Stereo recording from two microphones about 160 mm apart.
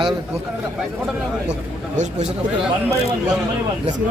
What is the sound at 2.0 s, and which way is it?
Speech, 45° right (ahead or behind).